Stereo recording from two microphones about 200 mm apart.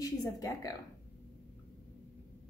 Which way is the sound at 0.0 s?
15° left (ahead or behind).